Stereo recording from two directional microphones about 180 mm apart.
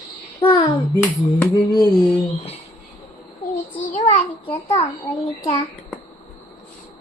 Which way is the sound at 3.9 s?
40° left (ahead or behind).